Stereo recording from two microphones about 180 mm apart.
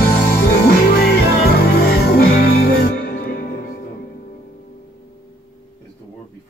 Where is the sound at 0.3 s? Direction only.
60° left (ahead or behind).